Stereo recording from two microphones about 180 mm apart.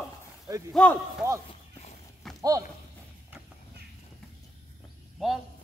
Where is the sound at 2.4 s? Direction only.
20° right (ahead or behind).